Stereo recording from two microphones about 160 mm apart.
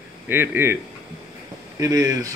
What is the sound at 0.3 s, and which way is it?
Speech, 15° right (ahead or behind).